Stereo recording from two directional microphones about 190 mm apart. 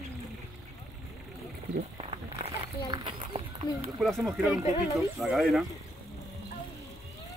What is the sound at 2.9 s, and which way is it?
Speech, 25° right (ahead or behind).